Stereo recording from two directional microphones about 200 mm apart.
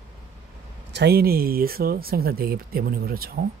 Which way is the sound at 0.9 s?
55° right (ahead or behind).